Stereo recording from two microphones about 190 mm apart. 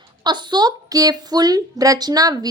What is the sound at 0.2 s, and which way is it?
Speech, 25° right (ahead or behind).